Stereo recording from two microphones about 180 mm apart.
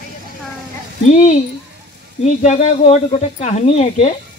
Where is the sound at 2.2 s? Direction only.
40° left (ahead or behind).